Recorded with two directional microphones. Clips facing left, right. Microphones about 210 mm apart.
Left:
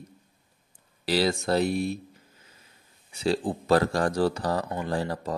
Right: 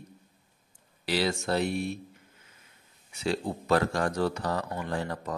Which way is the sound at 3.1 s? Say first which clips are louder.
Left 4 dB; 35° left (ahead or behind).